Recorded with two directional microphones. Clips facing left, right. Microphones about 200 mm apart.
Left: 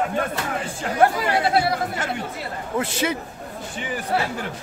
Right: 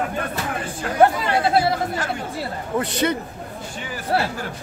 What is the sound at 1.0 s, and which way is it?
Chatter, 25° right (ahead or behind).